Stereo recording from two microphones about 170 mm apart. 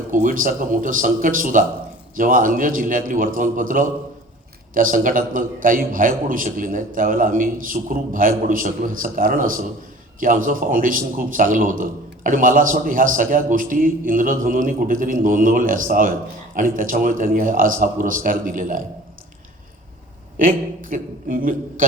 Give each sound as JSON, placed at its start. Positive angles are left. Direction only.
{"t": 0.1, "sound": "a man's voice", "side_deg": -50}
{"t": 20.4, "sound": "a man's voice", "side_deg": -50}